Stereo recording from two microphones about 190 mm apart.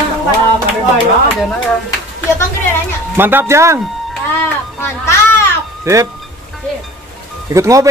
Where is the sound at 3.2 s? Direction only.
10° right (ahead or behind).